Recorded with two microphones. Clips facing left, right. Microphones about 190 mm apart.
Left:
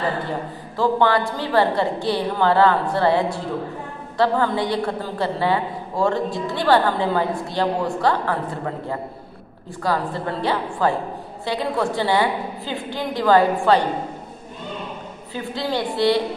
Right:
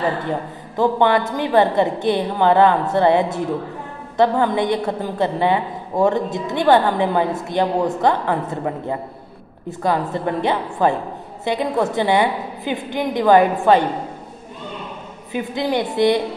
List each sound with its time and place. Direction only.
0.7 s a woman's voice: 20° right (ahead or behind)
15.3 s a woman's voice: 20° right (ahead or behind)